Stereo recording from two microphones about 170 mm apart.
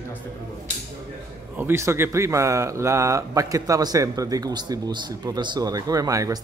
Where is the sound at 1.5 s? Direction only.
15° right (ahead or behind).